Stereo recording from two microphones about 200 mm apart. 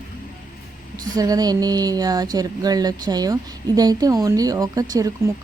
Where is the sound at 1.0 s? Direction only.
20° right (ahead or behind).